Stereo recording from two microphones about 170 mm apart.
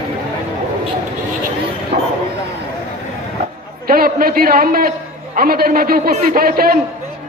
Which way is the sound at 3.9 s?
60° right (ahead or behind).